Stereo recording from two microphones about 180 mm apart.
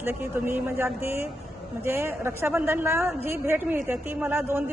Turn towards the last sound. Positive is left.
turn(degrees=-10)  # may be behind; listen again after turning